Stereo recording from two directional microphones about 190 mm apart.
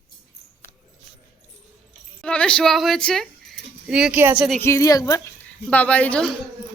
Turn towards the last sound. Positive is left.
turn(degrees=5)  # may be behind; listen again after turning